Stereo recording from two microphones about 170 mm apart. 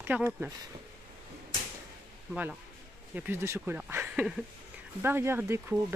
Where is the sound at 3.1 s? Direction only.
10° right (ahead or behind).